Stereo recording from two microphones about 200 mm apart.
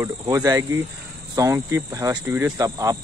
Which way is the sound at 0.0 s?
15° right (ahead or behind).